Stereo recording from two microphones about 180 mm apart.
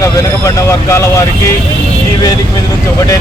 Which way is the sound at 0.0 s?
15° left (ahead or behind).